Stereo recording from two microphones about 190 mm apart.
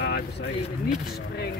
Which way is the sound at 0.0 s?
65° left (ahead or behind).